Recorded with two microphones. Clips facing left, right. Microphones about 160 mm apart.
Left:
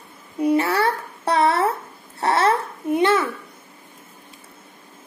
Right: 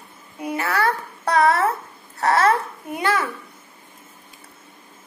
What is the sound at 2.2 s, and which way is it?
Babbling, 30° left (ahead or behind).